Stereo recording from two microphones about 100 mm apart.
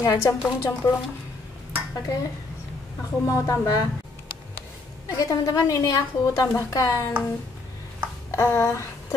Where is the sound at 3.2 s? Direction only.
35° left (ahead or behind).